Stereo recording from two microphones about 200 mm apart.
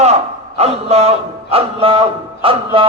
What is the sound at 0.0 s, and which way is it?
A man's voice, 35° right (ahead or behind).